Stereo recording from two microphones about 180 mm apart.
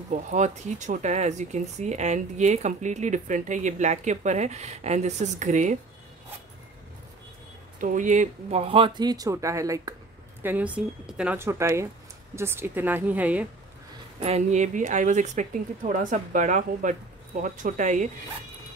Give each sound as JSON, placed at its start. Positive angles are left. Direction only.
{"t": 0.1, "sound": "speech", "side_deg": -40}
{"t": 7.8, "sound": "speech", "side_deg": -45}
{"t": 14.2, "sound": "speech", "side_deg": -40}